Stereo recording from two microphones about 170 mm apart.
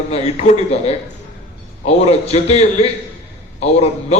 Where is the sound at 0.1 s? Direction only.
40° left (ahead or behind).